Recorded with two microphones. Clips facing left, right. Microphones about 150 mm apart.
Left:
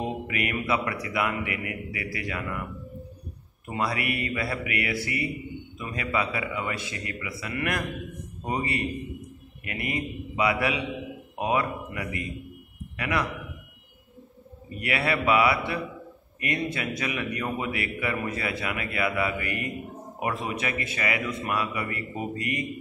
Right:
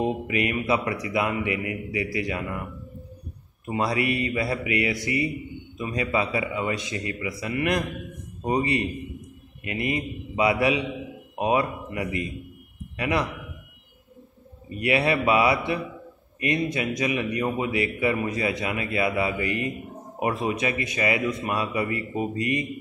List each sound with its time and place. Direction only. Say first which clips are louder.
0.0 s a man's voice: right 5 dB; 20° right (ahead or behind)
3.6 s a man's voice: right 4 dB; 20° right (ahead or behind)
14.8 s a man's voice: right 5 dB; 20° right (ahead or behind)